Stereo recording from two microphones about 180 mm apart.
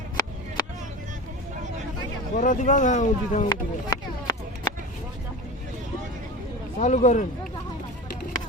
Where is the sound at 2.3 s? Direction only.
45° left (ahead or behind).